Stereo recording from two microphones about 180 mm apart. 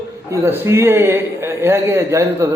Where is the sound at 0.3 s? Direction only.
15° right (ahead or behind).